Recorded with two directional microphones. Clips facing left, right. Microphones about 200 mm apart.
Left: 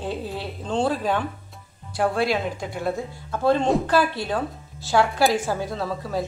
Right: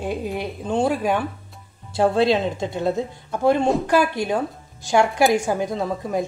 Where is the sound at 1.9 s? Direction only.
25° right (ahead or behind).